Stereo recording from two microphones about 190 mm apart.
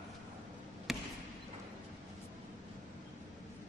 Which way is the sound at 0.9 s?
Centre (ahead or behind).